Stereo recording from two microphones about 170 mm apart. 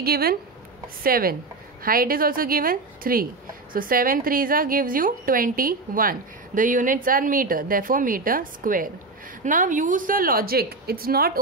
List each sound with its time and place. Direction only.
0.0 s a woman's voice: 65° right (ahead or behind)